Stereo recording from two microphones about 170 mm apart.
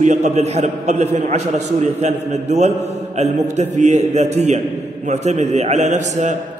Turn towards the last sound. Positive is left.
turn(degrees=-45)  # may be behind; listen again after turning